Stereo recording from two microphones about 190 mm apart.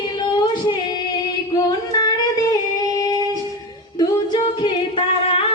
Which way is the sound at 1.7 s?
20° left (ahead or behind).